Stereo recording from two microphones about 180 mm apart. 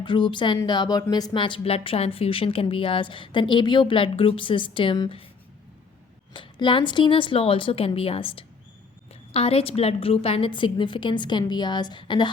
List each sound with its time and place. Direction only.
0.0 s speech: 25° left (ahead or behind)
6.3 s speech: 25° left (ahead or behind)